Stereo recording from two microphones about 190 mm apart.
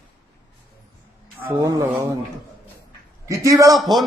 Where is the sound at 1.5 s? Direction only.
20° right (ahead or behind).